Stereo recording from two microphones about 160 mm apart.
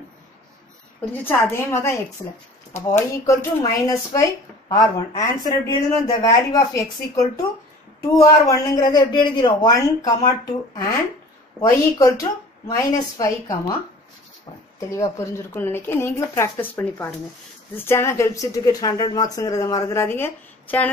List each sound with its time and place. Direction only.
1.2 s speech: 15° left (ahead or behind)
12.0 s speech: 20° left (ahead or behind)
14.8 s speech: 20° left (ahead or behind)